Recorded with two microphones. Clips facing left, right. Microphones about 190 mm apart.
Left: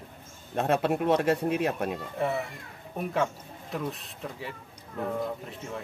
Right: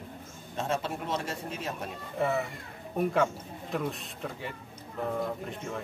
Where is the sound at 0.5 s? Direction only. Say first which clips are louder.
Left 7 dB; 60° left (ahead or behind).